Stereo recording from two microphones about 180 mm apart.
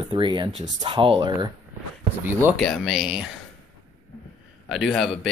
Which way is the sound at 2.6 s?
Centre (ahead or behind).